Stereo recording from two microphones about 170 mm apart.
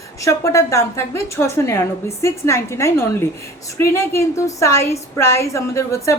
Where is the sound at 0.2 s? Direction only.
15° left (ahead or behind).